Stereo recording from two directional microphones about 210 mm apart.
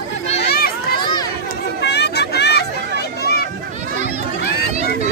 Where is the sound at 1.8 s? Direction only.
50° left (ahead or behind).